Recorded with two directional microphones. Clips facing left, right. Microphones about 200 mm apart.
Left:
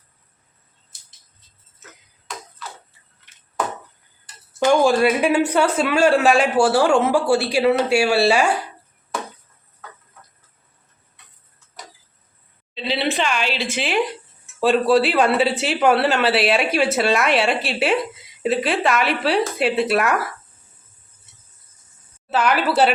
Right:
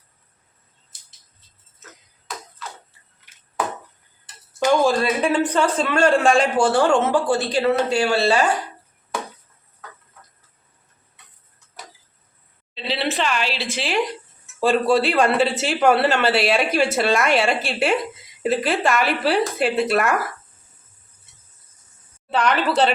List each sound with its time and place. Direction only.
4.7 s a man's voice: 15° left (ahead or behind)
12.7 s speech: centre (ahead or behind)
22.3 s speech: 5° left (ahead or behind)